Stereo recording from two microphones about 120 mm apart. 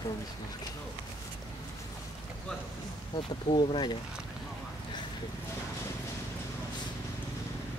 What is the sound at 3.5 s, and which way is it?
Speech, 45° left (ahead or behind).